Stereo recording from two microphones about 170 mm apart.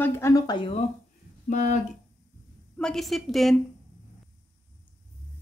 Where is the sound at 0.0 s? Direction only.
20° left (ahead or behind).